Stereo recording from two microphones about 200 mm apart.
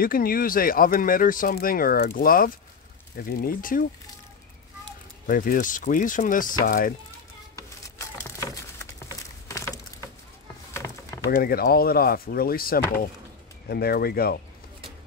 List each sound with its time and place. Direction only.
0.0 s speech: 45° left (ahead or behind)
5.2 s speech: 45° left (ahead or behind)
7.5 s a sound: 15° left (ahead or behind)
11.2 s speech: 50° left (ahead or behind)